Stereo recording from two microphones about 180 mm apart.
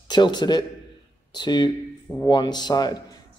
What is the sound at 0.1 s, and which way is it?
Speech, 25° left (ahead or behind).